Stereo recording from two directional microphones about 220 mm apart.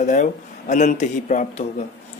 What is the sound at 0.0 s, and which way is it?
Speech, 35° left (ahead or behind).